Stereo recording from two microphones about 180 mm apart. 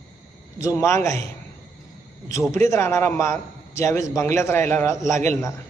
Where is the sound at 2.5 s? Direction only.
15° left (ahead or behind).